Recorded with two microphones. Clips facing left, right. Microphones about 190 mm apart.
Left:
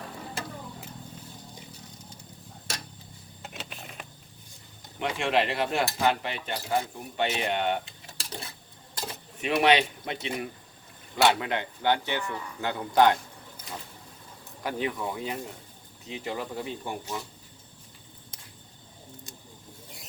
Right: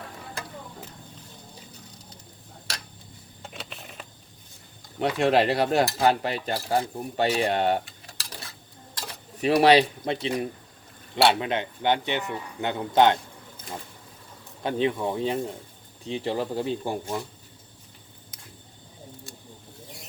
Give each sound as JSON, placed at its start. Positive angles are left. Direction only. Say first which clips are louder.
{"t": 3.4, "sound": "a sound", "louder": "right 1 dB", "side_deg": 0}
{"t": 4.9, "sound": "cutlery", "louder": "right 5 dB", "side_deg": -40}
{"t": 7.9, "sound": "a sound", "louder": "left 2 dB", "side_deg": 25}
{"t": 9.4, "sound": "cutlery", "louder": "right 5 dB", "side_deg": -35}
{"t": 11.1, "sound": "a man's voice", "louder": "right 2 dB", "side_deg": -20}
{"t": 14.6, "sound": "a man's voice", "louder": "right 6 dB", "side_deg": -25}
{"t": 16.0, "sound": "cutlery", "louder": "right 6 dB", "side_deg": -30}